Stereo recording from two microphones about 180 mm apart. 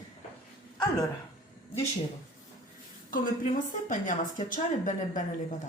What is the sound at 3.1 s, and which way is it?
A woman's voice, 45° left (ahead or behind).